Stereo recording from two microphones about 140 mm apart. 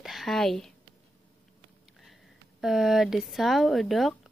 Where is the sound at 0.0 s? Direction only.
Centre (ahead or behind).